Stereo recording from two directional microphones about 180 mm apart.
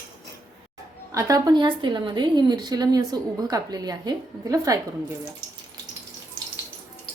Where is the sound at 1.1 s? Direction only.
20° right (ahead or behind).